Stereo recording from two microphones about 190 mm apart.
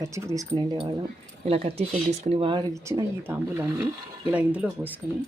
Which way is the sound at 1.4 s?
30° right (ahead or behind).